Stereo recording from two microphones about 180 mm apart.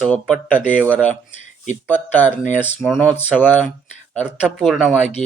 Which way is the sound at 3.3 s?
Centre (ahead or behind).